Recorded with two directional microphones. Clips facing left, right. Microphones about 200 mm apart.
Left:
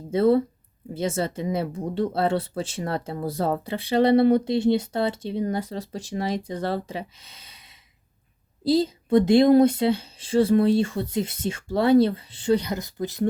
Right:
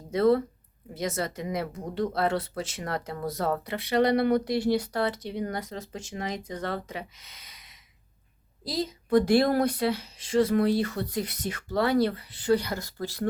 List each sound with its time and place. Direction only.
0.1 s speech: 25° left (ahead or behind)